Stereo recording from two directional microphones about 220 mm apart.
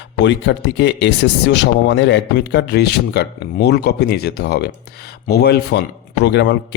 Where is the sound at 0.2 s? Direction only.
55° left (ahead or behind).